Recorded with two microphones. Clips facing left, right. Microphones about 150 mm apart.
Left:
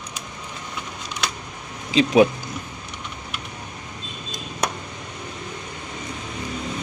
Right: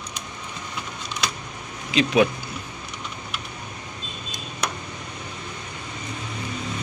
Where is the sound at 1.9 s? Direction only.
35° left (ahead or behind).